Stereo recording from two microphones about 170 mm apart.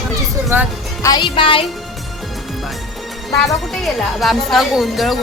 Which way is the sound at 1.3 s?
30° left (ahead or behind).